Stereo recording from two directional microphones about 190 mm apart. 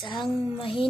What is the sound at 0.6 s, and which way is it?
Speech, 30° left (ahead or behind).